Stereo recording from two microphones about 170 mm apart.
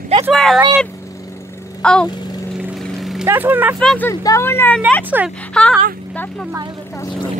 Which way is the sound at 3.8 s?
5° left (ahead or behind).